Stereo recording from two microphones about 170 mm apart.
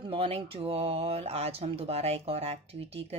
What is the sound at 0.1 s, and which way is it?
A woman's voice, 30° right (ahead or behind).